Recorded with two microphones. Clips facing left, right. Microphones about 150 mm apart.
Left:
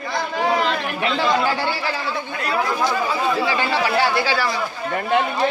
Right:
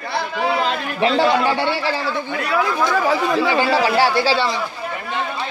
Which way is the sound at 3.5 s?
30° right (ahead or behind).